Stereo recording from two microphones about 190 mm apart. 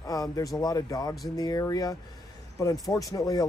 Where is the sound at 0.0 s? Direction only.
20° left (ahead or behind).